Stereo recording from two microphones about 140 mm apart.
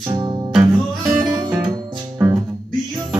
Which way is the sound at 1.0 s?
10° right (ahead or behind).